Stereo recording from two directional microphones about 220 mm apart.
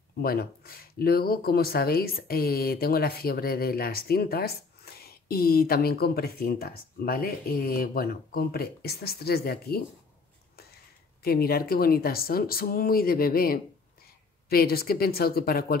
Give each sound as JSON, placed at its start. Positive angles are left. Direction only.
{"t": 0.2, "sound": "speech", "side_deg": 45}
{"t": 10.5, "sound": "a sound", "side_deg": 45}
{"t": 11.2, "sound": "speech", "side_deg": 45}